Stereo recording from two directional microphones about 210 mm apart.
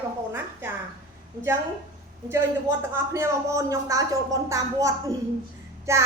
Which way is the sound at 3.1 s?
15° right (ahead or behind).